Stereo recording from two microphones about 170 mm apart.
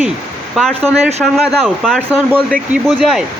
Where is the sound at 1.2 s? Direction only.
Centre (ahead or behind).